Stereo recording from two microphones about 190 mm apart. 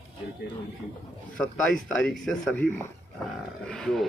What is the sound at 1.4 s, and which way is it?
Speech, centre (ahead or behind).